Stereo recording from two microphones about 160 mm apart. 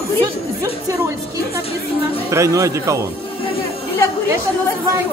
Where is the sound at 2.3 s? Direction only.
20° right (ahead or behind).